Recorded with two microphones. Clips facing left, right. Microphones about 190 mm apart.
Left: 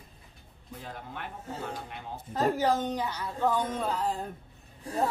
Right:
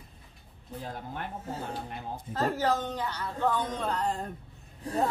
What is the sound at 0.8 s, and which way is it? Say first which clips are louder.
Speech: right 3 dB; 40° right (ahead or behind).